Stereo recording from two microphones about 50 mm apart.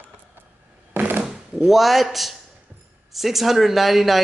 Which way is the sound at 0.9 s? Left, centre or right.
Right.